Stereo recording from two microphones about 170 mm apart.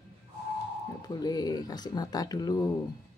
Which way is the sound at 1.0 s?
25° left (ahead or behind).